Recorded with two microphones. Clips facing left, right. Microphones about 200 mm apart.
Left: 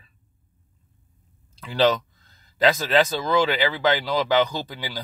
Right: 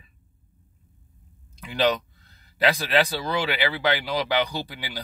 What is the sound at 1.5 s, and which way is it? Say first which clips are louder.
A man's voice: left 3 dB; 15° right (ahead or behind).